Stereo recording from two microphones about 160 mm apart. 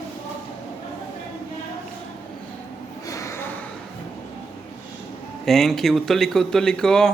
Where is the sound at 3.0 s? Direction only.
20° left (ahead or behind).